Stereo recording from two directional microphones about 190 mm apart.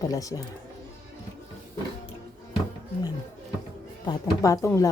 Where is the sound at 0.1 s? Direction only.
15° left (ahead or behind).